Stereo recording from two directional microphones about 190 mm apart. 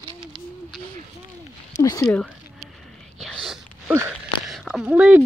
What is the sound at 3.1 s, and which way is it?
Whispering, centre (ahead or behind).